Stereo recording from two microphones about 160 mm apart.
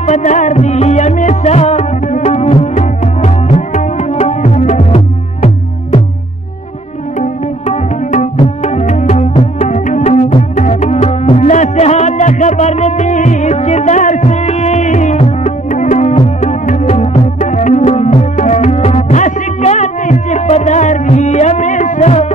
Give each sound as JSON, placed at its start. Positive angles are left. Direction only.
{"t": 0.0, "sound": "music", "side_deg": 45}
{"t": 7.2, "sound": "music", "side_deg": 45}